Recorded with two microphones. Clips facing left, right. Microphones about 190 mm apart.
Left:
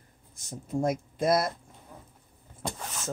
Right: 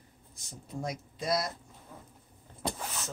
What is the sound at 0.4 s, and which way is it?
Speech, 50° left (ahead or behind).